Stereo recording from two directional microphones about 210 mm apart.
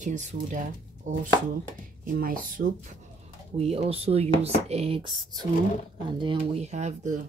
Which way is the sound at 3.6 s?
30° right (ahead or behind).